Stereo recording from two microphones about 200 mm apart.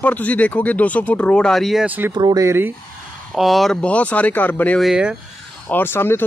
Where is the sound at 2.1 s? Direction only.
20° right (ahead or behind).